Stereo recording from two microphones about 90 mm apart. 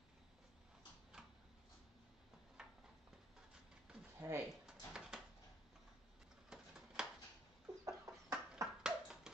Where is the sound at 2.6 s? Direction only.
10° right (ahead or behind).